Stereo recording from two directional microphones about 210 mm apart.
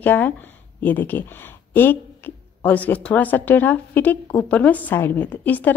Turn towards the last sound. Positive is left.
turn(degrees=10)  # may be behind; listen again after turning